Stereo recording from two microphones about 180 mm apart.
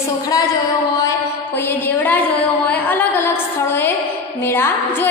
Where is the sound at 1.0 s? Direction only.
15° left (ahead or behind).